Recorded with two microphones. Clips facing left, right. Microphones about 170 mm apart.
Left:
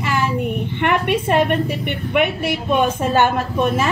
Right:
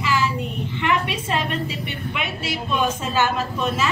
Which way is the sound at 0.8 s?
55° left (ahead or behind).